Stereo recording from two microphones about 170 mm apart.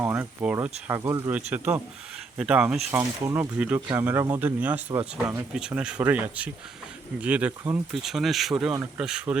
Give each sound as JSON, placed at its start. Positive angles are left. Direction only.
{"t": 0.0, "sound": "speech", "side_deg": -10}